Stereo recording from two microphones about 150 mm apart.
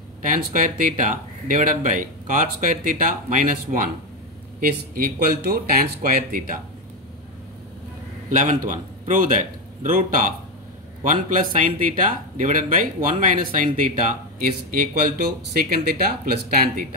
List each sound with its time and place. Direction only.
0.2 s speech: 60° right (ahead or behind)
8.3 s a man's voice: 60° right (ahead or behind)
14.7 s speech: 85° right